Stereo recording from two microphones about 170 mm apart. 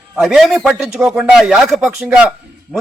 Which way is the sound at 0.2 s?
Centre (ahead or behind).